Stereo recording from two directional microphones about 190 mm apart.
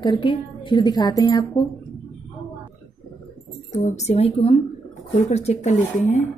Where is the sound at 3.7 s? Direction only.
40° left (ahead or behind).